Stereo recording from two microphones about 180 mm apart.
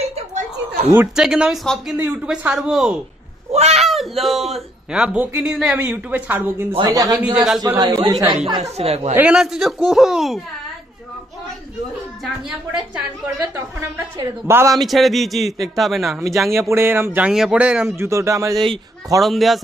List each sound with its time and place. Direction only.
0.0 s a sound: 35° right (ahead or behind)
0.9 s speech: 5° right (ahead or behind)
3.5 s a sound: 35° right (ahead or behind)
3.8 s speech: centre (ahead or behind)
6.7 s a man's voice: 20° right (ahead or behind)
8.7 s speech: 35° right (ahead or behind)
9.1 s speech: 5° right (ahead or behind)
12.4 s speech: 5° right (ahead or behind)
13.4 s speech: 15° right (ahead or behind)
14.8 s speech: centre (ahead or behind)
16.4 s speech: 15° right (ahead or behind)
19.2 s speech: centre (ahead or behind)